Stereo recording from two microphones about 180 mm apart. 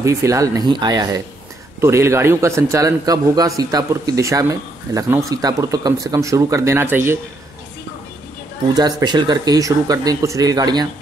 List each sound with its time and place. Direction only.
0.0 s a man's voice: 15° right (ahead or behind)
8.7 s speech: 25° right (ahead or behind)